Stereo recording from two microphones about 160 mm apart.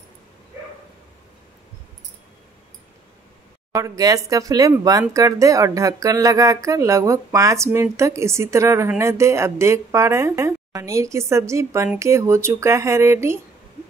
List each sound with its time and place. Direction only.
3.7 s speech: 20° right (ahead or behind)